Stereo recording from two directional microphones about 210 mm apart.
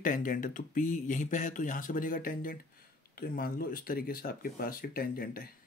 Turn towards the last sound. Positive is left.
turn(degrees=45)  # may be behind; listen again after turning